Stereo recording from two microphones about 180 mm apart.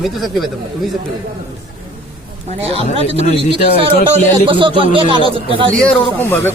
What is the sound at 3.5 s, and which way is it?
A man's voice, 30° right (ahead or behind).